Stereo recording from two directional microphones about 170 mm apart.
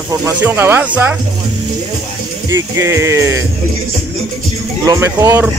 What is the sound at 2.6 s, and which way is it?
Music, 15° right (ahead or behind).